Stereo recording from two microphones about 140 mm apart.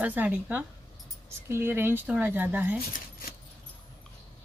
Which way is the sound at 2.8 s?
90° left.